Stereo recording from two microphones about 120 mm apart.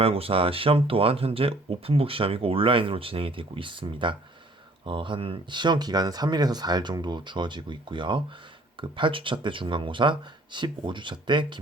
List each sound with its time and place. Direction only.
0.0 s speech: 50° right (ahead or behind)